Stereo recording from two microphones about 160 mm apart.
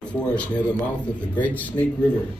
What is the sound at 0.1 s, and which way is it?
Speech, 10° left (ahead or behind).